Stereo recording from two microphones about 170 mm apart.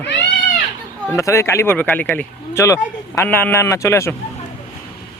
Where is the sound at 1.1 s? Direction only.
20° left (ahead or behind).